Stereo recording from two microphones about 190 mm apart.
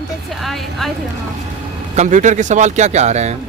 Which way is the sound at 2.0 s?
40° right (ahead or behind).